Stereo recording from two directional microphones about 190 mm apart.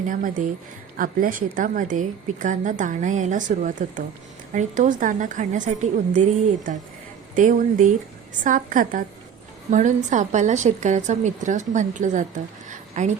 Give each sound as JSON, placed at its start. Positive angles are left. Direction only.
{"t": 0.1, "sound": "a woman's voice", "side_deg": -45}
{"t": 7.3, "sound": "a woman's voice", "side_deg": -40}
{"t": 12.7, "sound": "a sound", "side_deg": -40}